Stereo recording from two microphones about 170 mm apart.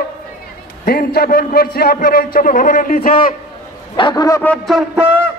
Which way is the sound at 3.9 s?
25° left (ahead or behind).